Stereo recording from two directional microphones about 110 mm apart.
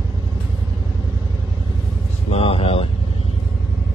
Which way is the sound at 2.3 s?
60° left (ahead or behind).